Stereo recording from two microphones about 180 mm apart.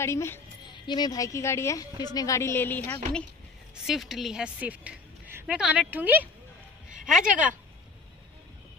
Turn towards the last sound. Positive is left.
turn(degrees=-5)  # may be behind; listen again after turning